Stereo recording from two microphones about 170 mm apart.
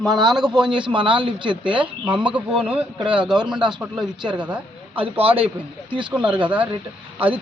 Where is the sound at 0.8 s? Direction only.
30° right (ahead or behind).